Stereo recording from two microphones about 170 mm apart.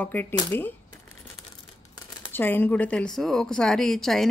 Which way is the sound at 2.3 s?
10° left (ahead or behind).